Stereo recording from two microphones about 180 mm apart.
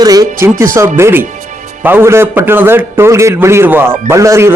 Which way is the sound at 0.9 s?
15° right (ahead or behind).